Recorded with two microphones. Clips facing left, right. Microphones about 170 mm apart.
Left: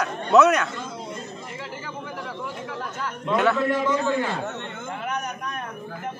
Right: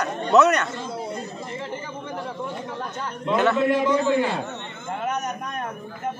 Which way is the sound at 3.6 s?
15° right (ahead or behind).